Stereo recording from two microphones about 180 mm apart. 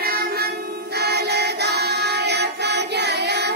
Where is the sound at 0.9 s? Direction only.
65° right (ahead or behind).